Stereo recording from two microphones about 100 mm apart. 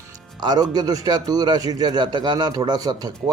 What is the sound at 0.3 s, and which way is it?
A man's voice, 45° right (ahead or behind).